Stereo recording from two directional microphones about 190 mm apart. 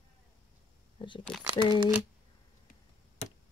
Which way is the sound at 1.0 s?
30° left (ahead or behind).